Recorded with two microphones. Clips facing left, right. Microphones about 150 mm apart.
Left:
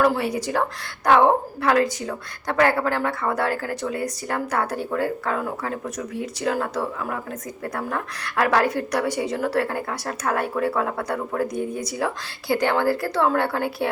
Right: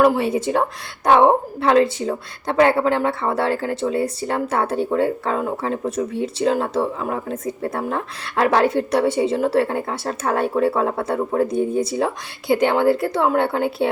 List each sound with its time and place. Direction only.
0.0 s a woman's voice: 20° right (ahead or behind)